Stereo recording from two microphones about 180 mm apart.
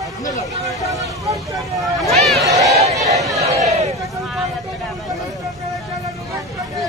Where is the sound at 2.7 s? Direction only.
35° right (ahead or behind).